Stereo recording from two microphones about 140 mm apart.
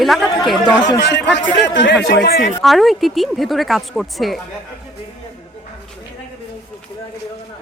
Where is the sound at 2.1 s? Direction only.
85° left.